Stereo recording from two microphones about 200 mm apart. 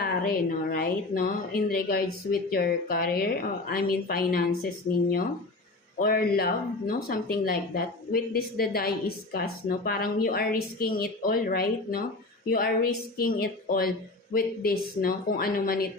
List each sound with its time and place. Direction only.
0.0 s a woman's voice: 50° left (ahead or behind)
6.0 s speech: 50° left (ahead or behind)